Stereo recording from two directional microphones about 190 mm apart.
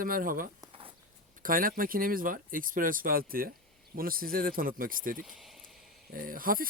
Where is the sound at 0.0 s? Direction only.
45° right (ahead or behind).